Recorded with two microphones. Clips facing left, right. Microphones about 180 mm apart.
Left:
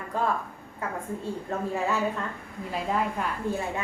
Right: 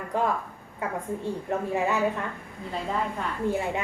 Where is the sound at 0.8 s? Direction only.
20° right (ahead or behind).